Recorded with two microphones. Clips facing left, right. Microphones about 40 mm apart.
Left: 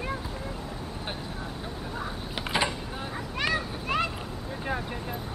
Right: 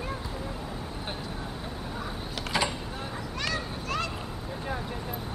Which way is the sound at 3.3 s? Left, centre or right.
Left.